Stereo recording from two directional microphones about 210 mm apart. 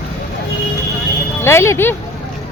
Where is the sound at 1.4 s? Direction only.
10° left (ahead or behind).